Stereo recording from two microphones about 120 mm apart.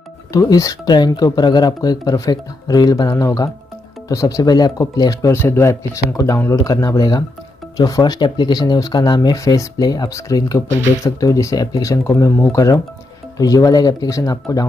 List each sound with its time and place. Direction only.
0.3 s speech: 30° left (ahead or behind)